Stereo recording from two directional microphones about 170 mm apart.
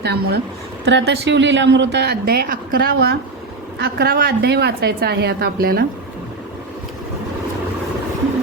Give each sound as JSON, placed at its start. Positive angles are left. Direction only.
{"t": 0.0, "sound": "speech", "side_deg": -75}
{"t": 0.9, "sound": "a woman's voice", "side_deg": -90}